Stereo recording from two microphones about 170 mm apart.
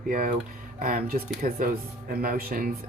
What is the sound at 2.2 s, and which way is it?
Speech, 60° right (ahead or behind).